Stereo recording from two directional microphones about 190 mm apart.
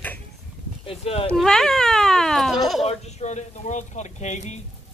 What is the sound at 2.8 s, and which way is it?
Speech, 35° left (ahead or behind).